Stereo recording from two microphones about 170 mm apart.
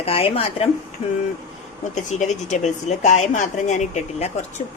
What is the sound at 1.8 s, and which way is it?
Speech, 45° left (ahead or behind).